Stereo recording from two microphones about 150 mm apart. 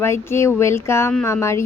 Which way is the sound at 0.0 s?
15° left (ahead or behind).